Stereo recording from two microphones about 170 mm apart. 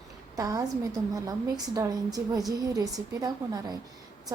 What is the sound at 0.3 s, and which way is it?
A woman's voice, 20° right (ahead or behind).